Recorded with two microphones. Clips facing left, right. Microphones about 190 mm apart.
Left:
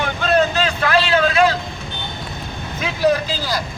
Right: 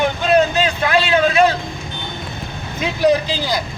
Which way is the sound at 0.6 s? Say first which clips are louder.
Right 1 dB; 20° right (ahead or behind).